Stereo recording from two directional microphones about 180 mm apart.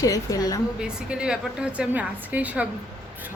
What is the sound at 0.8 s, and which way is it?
A woman's voice, 5° right (ahead or behind).